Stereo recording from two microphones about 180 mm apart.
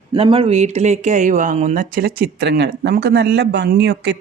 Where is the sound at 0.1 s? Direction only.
30° right (ahead or behind).